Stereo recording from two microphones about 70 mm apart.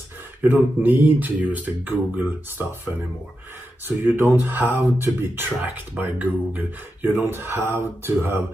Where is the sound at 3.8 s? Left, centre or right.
Right.